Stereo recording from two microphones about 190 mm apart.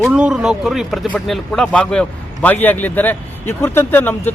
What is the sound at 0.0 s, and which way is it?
Speech, 5° right (ahead or behind).